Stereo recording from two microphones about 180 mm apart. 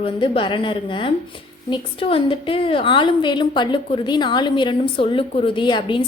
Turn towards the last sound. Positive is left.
turn(degrees=25)  # may be behind; listen again after turning